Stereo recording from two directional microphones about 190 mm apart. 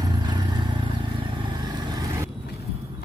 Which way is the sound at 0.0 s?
20° right (ahead or behind).